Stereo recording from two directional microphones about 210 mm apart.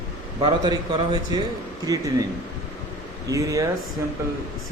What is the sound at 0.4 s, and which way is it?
A man's voice, 20° right (ahead or behind).